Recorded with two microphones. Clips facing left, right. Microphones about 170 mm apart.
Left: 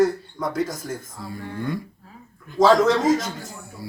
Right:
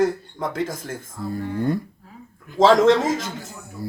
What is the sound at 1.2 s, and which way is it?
Speech, 5° left (ahead or behind).